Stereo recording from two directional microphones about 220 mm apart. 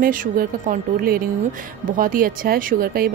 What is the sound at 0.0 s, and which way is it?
Speech, 40° right (ahead or behind).